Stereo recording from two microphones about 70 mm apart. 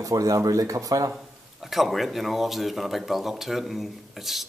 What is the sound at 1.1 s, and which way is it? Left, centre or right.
Speech, centre.